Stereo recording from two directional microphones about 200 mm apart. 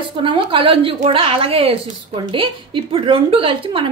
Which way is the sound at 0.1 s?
25° right (ahead or behind).